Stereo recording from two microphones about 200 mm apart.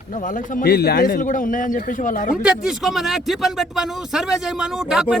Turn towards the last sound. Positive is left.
turn(degrees=0)  # may be behind; listen again after turning